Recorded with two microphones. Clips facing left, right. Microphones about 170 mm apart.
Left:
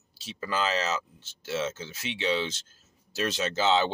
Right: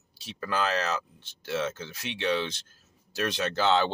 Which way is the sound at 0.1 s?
60° right (ahead or behind).